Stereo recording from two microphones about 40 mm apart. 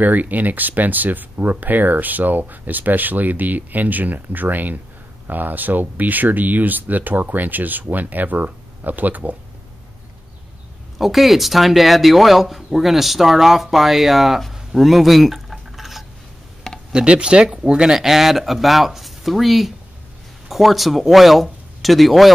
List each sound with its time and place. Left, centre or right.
0.0 s speech: right
11.0 s speech: centre
15.5 s a sound: centre
16.9 s speech: right; by 22.3 s centre